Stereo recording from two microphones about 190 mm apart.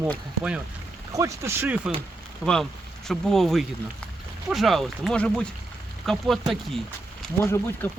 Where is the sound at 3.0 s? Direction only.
Centre (ahead or behind).